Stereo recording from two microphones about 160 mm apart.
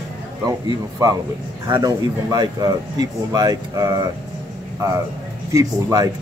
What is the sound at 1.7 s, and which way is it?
Speech, 25° right (ahead or behind).